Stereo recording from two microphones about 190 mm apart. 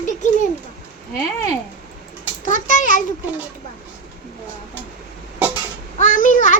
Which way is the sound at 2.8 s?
45° left (ahead or behind).